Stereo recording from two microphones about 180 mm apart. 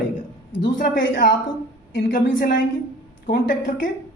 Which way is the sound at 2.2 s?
90° left.